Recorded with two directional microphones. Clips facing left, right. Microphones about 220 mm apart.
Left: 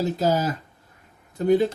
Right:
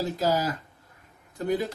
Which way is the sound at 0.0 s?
25° left (ahead or behind).